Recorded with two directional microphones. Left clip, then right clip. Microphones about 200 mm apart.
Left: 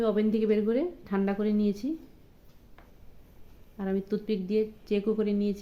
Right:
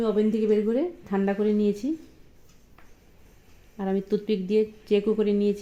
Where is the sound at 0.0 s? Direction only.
40° right (ahead or behind).